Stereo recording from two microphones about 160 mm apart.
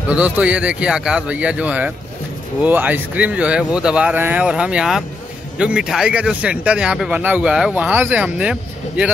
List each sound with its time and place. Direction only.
0.1 s speech: 10° right (ahead or behind)